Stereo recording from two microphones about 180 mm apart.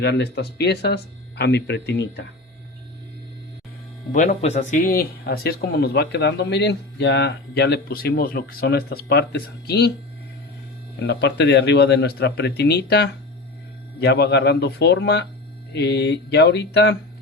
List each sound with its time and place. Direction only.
0.0 s speech: 70° left (ahead or behind)
4.1 s speech: 45° left (ahead or behind)
4.9 s speech: 60° left (ahead or behind)
11.0 s speech: 70° left (ahead or behind)